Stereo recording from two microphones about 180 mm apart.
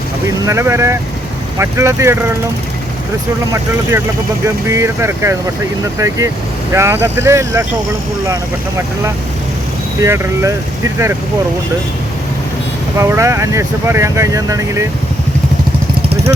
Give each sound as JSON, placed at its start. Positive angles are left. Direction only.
{"t": 0.3, "sound": "speech", "side_deg": -15}
{"t": 4.4, "sound": "speech", "side_deg": -15}
{"t": 10.0, "sound": "speech", "side_deg": -15}
{"t": 13.0, "sound": "speech", "side_deg": -15}